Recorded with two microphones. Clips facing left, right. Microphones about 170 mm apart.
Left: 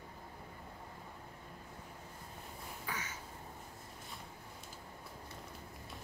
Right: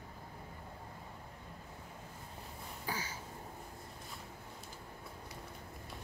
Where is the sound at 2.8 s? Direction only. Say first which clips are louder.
Right 3 dB; 30° right (ahead or behind).